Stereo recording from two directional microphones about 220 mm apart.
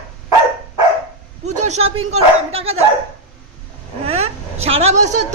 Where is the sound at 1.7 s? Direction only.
30° right (ahead or behind).